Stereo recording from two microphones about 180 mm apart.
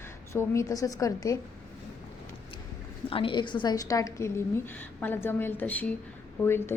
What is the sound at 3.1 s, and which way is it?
A woman's voice, 30° left (ahead or behind).